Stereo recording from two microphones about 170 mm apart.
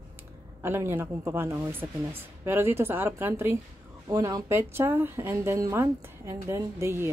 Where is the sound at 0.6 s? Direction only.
15° right (ahead or behind).